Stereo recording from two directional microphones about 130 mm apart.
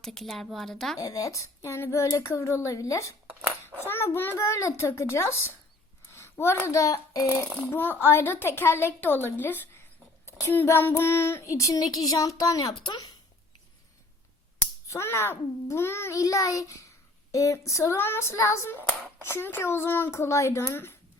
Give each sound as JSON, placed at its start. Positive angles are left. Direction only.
{"t": 0.0, "sound": "speech", "side_deg": 5}
{"t": 0.9, "sound": "a child's voice", "side_deg": 25}
{"t": 7.7, "sound": "a woman's voice", "side_deg": 15}
{"t": 14.8, "sound": "speech", "side_deg": 20}